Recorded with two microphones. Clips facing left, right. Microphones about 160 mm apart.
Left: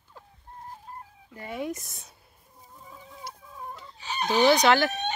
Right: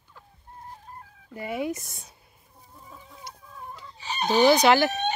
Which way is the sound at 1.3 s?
10° right (ahead or behind).